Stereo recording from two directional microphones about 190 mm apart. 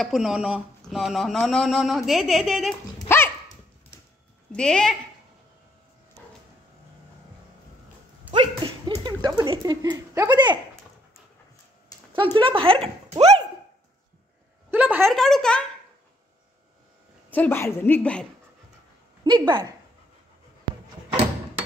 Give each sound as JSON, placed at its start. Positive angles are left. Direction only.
{"t": 0.0, "sound": "speech", "side_deg": 0}
{"t": 3.0, "sound": "dog", "side_deg": 10}
{"t": 4.5, "sound": "speech", "side_deg": 5}
{"t": 8.3, "sound": "dog", "side_deg": -25}
{"t": 9.4, "sound": "speech", "side_deg": -20}
{"t": 12.1, "sound": "speech", "side_deg": -25}
{"t": 14.7, "sound": "a sound", "side_deg": -10}
{"t": 15.0, "sound": "speech", "side_deg": 0}
{"t": 17.3, "sound": "a woman's voice", "side_deg": 10}
{"t": 19.2, "sound": "speech", "side_deg": -25}